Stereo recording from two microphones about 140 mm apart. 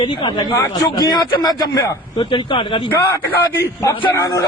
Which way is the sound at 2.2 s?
40° left (ahead or behind).